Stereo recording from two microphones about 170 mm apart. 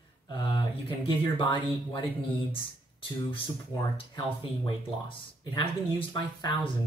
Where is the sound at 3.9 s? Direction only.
30° left (ahead or behind).